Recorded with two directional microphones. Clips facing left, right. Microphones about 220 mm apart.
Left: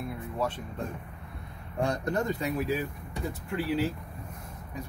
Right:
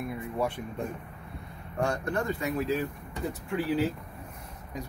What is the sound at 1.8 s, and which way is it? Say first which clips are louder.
Speech: left 1 dB; 15° left (ahead or behind).